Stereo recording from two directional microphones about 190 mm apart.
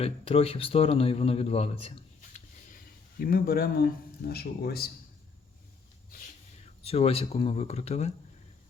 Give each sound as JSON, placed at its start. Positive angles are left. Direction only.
{"t": 0.0, "sound": "speech", "side_deg": 30}
{"t": 3.2, "sound": "speech", "side_deg": 50}
{"t": 6.8, "sound": "speech", "side_deg": 30}